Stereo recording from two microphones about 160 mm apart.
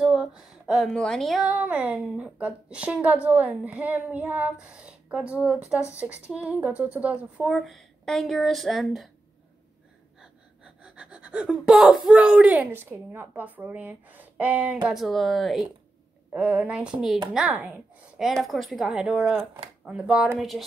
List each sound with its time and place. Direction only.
0.0 s a sound: 5° right (ahead or behind)
1.5 s a woman's voice: 10° right (ahead or behind)
10.6 s a woman's voice: 5° right (ahead or behind)